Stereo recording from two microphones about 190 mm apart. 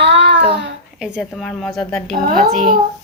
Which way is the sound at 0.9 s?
5° right (ahead or behind).